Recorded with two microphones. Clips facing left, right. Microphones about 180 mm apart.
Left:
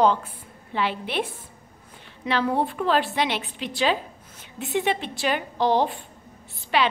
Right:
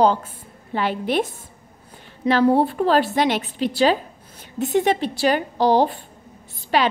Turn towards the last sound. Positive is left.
turn(degrees=-40)  # may be behind; listen again after turning